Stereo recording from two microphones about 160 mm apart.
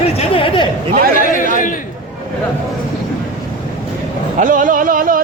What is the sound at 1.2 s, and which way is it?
Chatter, 55° left (ahead or behind).